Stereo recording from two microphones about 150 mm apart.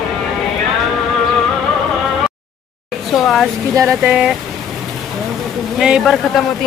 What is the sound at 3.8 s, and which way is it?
Speech, 20° right (ahead or behind).